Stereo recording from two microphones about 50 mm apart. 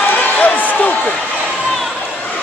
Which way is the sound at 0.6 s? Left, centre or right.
Left.